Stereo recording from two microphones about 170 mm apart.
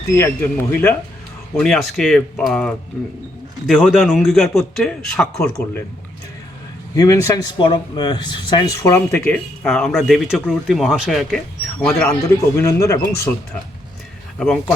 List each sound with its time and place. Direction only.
0.1 s a man's voice: 15° left (ahead or behind)
6.9 s a man's voice: 20° left (ahead or behind); by 12.0 s 5° left (ahead or behind)
12.5 s speech: 15° left (ahead or behind)
14.3 s speech: 5° left (ahead or behind)